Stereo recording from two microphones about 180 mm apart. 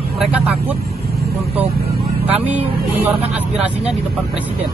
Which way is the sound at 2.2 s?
10° right (ahead or behind).